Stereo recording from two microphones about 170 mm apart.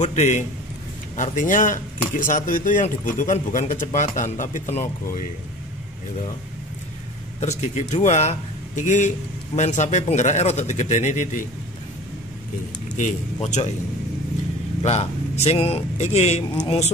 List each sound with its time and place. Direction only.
0.0 s a man's voice: 45° left (ahead or behind)
7.3 s a man's voice: 40° left (ahead or behind)
12.9 s a man's voice: 45° left (ahead or behind)
14.8 s speech: 40° left (ahead or behind)